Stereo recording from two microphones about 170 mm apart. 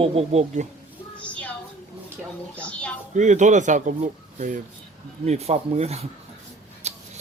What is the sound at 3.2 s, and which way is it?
Speech, 45° right (ahead or behind).